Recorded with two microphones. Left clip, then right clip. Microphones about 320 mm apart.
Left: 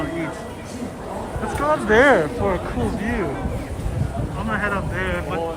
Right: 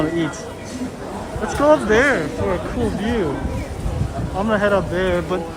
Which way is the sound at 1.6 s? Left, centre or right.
Centre.